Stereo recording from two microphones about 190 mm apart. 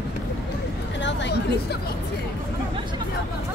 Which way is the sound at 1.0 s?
65° left (ahead or behind).